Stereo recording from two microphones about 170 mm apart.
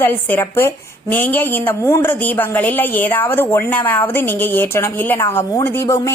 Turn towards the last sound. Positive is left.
turn(degrees=20)  # may be behind; listen again after turning